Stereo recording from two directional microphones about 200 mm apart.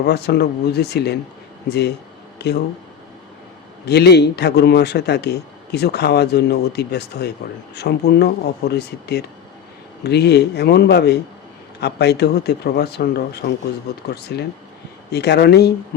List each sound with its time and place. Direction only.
0.0 s speech: 55° left (ahead or behind)
3.8 s speech: 55° left (ahead or behind)